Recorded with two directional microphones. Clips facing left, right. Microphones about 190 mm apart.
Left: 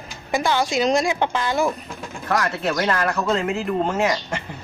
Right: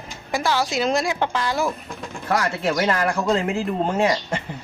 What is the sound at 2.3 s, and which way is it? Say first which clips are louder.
Speech: even; 25° right (ahead or behind).